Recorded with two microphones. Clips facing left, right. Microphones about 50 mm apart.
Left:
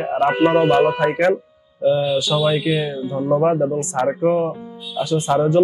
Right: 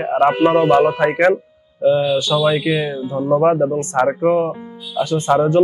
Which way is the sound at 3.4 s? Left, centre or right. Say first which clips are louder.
Right 2 dB; right.